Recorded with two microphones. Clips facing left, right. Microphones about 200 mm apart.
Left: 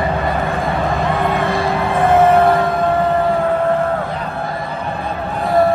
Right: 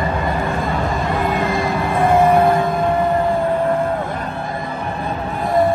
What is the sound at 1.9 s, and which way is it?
Music, 50° left (ahead or behind).